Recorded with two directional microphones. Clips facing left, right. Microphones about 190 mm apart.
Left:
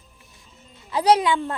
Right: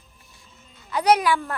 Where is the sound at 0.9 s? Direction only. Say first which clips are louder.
Left 1 dB; 30° left (ahead or behind).